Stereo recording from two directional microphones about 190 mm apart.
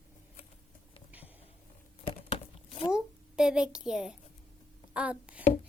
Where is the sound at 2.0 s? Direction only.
30° left (ahead or behind).